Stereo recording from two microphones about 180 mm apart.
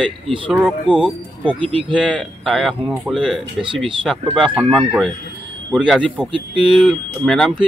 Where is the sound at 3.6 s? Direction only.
30° right (ahead or behind).